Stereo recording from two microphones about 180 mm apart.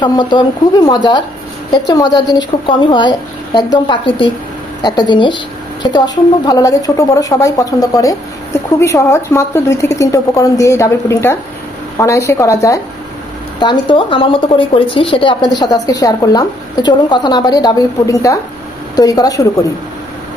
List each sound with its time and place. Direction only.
0.0 s a woman's voice: 25° left (ahead or behind)